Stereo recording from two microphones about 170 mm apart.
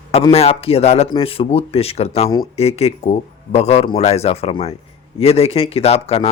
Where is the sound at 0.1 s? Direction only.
35° left (ahead or behind).